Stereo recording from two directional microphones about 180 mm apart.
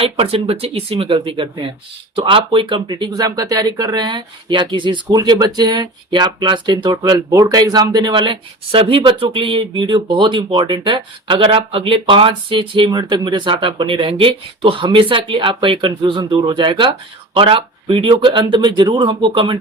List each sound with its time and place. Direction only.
0.0 s speech: 30° right (ahead or behind)